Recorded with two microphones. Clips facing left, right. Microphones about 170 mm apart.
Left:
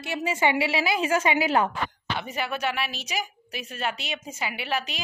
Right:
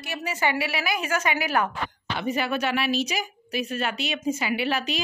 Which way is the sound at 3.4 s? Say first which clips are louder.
Right 9 dB; 80° right.